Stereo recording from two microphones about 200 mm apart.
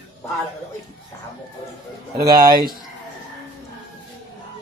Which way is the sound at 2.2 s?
20° right (ahead or behind).